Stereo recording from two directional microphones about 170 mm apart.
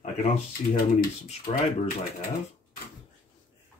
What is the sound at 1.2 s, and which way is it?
Speech, 35° left (ahead or behind).